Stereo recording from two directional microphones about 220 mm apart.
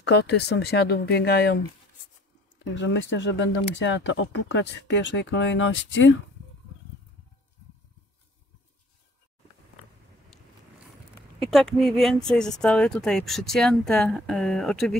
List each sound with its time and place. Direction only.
0.0 s speech: 50° left (ahead or behind)
2.6 s speech: 55° left (ahead or behind)
11.3 s speech: centre (ahead or behind)